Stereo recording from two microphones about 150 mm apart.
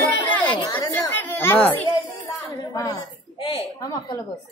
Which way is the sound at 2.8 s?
25° left (ahead or behind).